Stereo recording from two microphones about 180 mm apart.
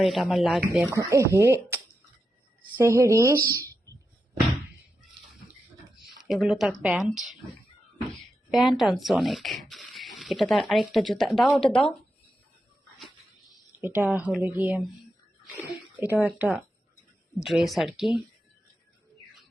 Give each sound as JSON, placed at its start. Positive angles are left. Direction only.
{"t": 0.0, "sound": "speech", "side_deg": 0}
{"t": 0.9, "sound": "speech", "side_deg": -15}
{"t": 6.1, "sound": "speech", "side_deg": 0}
{"t": 8.4, "sound": "speech", "side_deg": 0}
{"t": 13.7, "sound": "speech", "side_deg": -10}